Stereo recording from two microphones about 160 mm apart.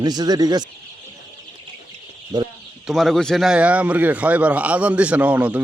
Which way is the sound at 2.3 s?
25° right (ahead or behind).